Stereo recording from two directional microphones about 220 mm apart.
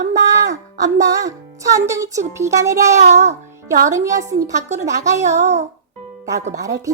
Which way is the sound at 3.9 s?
15° right (ahead or behind).